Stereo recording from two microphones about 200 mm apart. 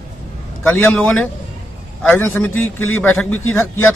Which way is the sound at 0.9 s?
5° left (ahead or behind).